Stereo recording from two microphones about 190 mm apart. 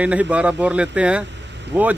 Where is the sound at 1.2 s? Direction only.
70° right (ahead or behind).